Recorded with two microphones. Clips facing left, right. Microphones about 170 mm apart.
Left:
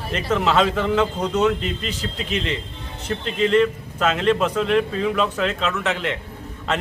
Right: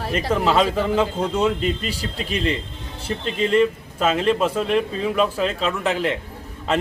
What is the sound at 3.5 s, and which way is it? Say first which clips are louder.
Speech: right 1 dB; 10° right (ahead or behind).